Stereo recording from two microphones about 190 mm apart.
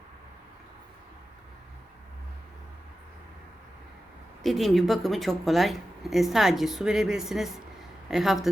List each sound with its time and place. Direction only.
4.4 s speech: centre (ahead or behind)